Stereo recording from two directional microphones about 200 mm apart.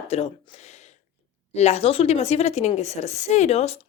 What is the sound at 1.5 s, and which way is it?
A woman's voice, 35° left (ahead or behind).